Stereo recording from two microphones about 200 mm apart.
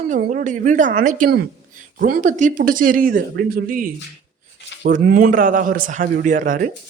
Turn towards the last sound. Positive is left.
turn(degrees=-40)  # may be behind; listen again after turning